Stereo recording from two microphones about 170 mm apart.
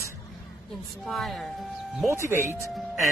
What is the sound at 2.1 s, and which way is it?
Speech, 15° right (ahead or behind).